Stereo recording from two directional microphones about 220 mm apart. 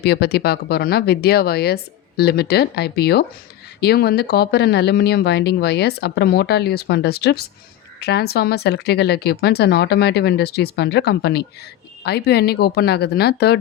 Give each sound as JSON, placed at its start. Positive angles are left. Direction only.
{"t": 0.0, "sound": "speech", "side_deg": 50}